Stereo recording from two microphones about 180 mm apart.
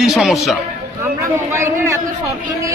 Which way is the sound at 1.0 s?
15° right (ahead or behind).